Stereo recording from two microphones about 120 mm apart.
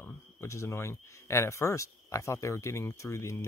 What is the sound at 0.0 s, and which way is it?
Speech, 20° left (ahead or behind).